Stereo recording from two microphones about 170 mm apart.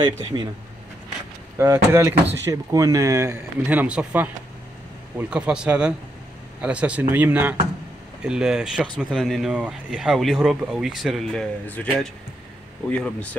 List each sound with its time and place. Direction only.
0.0 s speech: 30° right (ahead or behind)
1.6 s speech: 15° right (ahead or behind); by 11.9 s 10° left (ahead or behind)
12.9 s speech: 10° left (ahead or behind)